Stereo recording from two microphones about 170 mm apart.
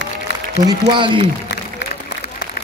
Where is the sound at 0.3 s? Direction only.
90° left.